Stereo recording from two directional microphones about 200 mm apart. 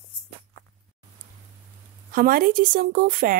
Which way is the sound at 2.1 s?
45° right (ahead or behind).